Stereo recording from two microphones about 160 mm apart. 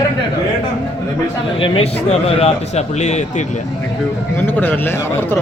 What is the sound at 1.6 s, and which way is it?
A man's voice, 35° left (ahead or behind).